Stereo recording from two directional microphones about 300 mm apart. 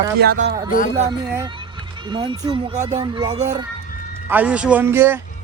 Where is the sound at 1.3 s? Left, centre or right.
Centre.